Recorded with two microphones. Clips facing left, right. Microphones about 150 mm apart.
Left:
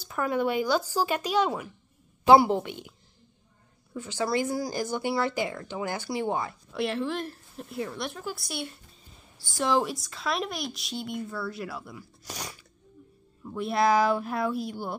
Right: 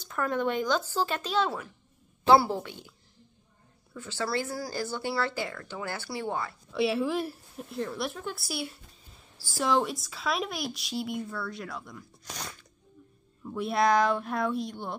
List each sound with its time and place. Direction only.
0.0 s a woman's voice: 10° left (ahead or behind)
3.9 s speech: 20° left (ahead or behind)
6.7 s speech: 5° right (ahead or behind)